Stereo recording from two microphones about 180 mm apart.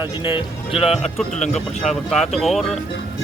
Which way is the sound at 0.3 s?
25° left (ahead or behind).